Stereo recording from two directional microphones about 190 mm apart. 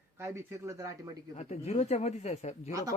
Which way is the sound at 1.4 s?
35° left (ahead or behind).